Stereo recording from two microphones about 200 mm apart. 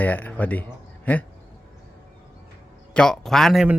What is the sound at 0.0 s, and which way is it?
Speech, 10° left (ahead or behind).